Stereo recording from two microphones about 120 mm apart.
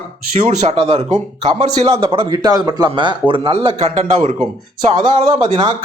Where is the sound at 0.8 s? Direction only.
55° right (ahead or behind).